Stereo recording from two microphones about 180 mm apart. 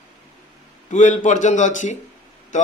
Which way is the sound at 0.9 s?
45° left (ahead or behind).